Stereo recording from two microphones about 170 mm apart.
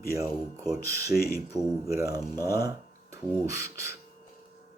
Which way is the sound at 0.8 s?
20° right (ahead or behind).